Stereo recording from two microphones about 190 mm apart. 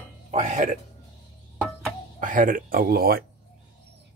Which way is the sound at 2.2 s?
45° right (ahead or behind).